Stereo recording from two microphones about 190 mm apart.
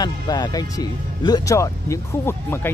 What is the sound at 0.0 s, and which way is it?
Speech, 20° left (ahead or behind).